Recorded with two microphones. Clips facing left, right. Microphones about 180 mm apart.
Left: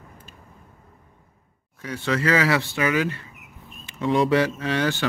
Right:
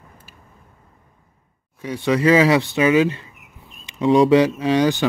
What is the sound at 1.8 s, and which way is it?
Speech, 15° right (ahead or behind).